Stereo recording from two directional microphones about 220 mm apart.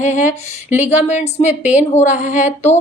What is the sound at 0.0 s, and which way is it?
A woman's voice, 30° left (ahead or behind).